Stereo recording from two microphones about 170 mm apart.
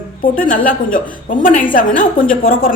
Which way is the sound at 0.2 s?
50° left (ahead or behind).